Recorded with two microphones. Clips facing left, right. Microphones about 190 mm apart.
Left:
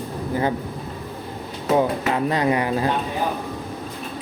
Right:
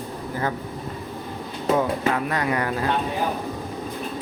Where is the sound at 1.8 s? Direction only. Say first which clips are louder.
Left 4 dB; 25° left (ahead or behind).